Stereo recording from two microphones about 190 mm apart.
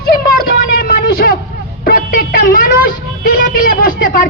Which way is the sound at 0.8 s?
55° left (ahead or behind).